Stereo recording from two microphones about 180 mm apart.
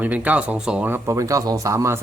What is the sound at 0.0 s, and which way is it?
Speech, 10° right (ahead or behind).